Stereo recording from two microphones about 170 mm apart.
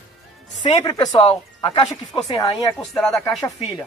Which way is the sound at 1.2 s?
35° left (ahead or behind).